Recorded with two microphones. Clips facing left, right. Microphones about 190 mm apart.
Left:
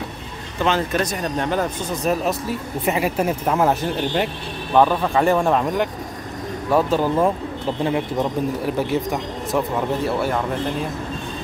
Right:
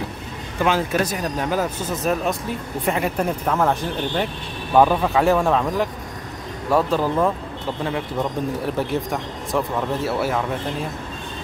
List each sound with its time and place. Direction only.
0.7 s speech: 5° right (ahead or behind); by 4.3 s 10° left (ahead or behind)
4.7 s speech: 5° right (ahead or behind)
7.8 s speech: 20° left (ahead or behind)
8.6 s speech: centre (ahead or behind)